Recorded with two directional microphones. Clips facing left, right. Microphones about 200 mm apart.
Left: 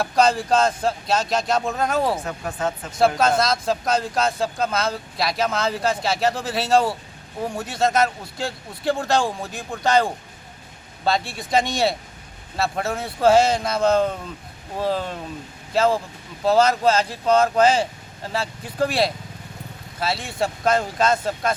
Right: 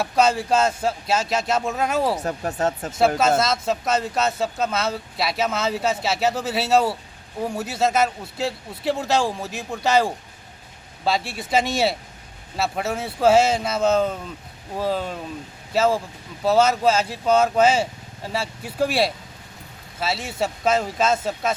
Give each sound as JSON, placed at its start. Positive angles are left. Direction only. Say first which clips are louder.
{"t": 0.0, "sound": "speech", "louder": "left 1 dB", "side_deg": -5}
{"t": 2.2, "sound": "speech", "louder": "right 3 dB", "side_deg": -40}
{"t": 3.2, "sound": "speech", "louder": "even", "side_deg": -5}
{"t": 11.3, "sound": "speech", "louder": "even", "side_deg": -5}